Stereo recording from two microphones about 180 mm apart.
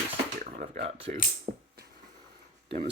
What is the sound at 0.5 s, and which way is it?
Speech, 40° right (ahead or behind).